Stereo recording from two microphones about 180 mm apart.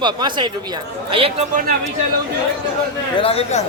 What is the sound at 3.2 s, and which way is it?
Speech, 30° left (ahead or behind).